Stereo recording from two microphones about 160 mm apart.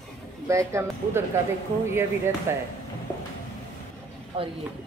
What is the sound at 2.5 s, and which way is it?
Speech, 15° right (ahead or behind).